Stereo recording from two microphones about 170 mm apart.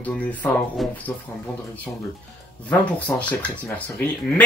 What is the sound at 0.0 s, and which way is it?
Speech, 10° left (ahead or behind).